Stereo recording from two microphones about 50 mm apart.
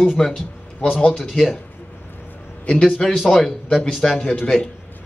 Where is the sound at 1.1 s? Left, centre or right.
Centre.